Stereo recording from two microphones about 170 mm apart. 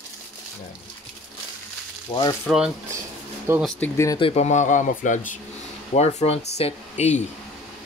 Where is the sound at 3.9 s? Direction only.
20° left (ahead or behind).